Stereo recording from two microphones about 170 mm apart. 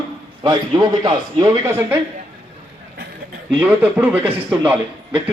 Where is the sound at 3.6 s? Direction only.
10° right (ahead or behind).